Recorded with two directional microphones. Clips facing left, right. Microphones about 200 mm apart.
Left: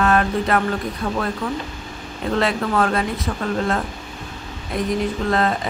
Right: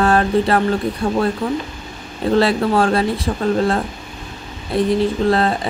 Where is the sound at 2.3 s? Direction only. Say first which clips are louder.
Right 5 dB; 35° right (ahead or behind).